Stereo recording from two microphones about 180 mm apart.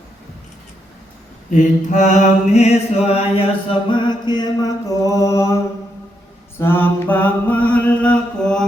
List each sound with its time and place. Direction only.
1.5 s mantra: 45° left (ahead or behind); by 5.5 s 15° left (ahead or behind)
6.6 s mantra: 10° left (ahead or behind)